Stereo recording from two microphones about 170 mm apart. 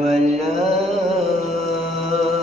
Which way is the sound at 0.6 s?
35° right (ahead or behind).